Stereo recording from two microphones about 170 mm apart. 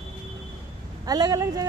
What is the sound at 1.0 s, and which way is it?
Speech, 20° right (ahead or behind).